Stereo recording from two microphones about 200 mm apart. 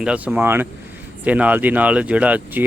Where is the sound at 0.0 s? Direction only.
5° right (ahead or behind).